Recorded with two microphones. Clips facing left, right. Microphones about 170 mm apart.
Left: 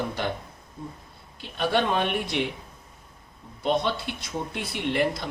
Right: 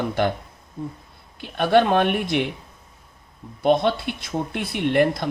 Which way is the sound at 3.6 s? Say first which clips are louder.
Right 6 dB; 60° right (ahead or behind).